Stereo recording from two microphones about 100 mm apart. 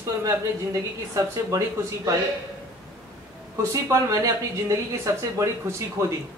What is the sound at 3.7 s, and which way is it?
Speech, 35° right (ahead or behind).